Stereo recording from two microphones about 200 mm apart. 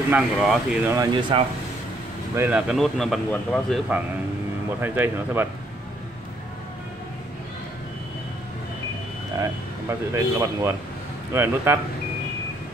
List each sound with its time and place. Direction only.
0.1 s speech: 5° right (ahead or behind)
0.9 s speech: 20° right (ahead or behind)
2.3 s speech: 10° right (ahead or behind)
4.8 s speech: 10° right (ahead or behind)
9.4 s speech: 15° right (ahead or behind)